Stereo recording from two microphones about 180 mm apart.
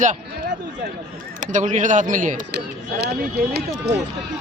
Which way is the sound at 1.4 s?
45° right (ahead or behind).